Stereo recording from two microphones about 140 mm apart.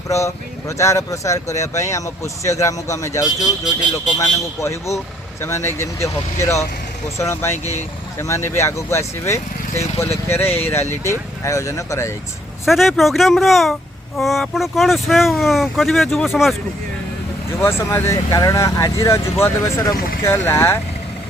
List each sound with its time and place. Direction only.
0.8 s speech: 20° left (ahead or behind)
12.6 s speech: centre (ahead or behind)
17.6 s speech: 20° left (ahead or behind)